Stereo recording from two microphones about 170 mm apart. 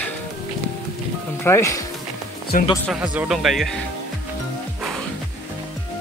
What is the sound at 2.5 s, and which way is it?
Speech, 55° left (ahead or behind).